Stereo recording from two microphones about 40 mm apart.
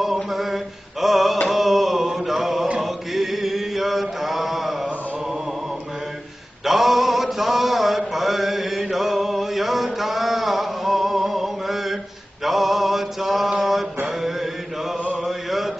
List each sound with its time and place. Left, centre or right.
0.0 s a sound: centre
1.0 s mantra: centre
2.8 s chant: centre
6.6 s mantra: centre
15.2 s chant: centre